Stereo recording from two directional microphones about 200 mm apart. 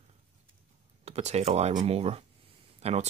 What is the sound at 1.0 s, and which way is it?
Speech, 35° right (ahead or behind).